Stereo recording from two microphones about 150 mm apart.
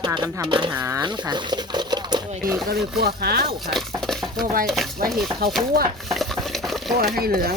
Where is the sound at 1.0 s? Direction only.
30° right (ahead or behind).